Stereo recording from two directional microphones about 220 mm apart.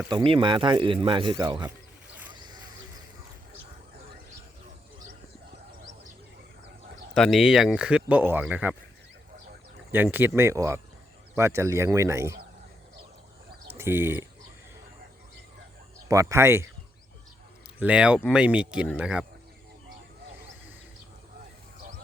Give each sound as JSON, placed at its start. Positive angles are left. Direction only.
{"t": 0.1, "sound": "speech", "side_deg": -20}
{"t": 7.1, "sound": "speech", "side_deg": 0}
{"t": 9.9, "sound": "speech", "side_deg": -10}
{"t": 13.7, "sound": "speech", "side_deg": -10}
{"t": 16.0, "sound": "speech", "side_deg": -15}
{"t": 17.7, "sound": "speech", "side_deg": -5}
{"t": 21.8, "sound": "a sound", "side_deg": -40}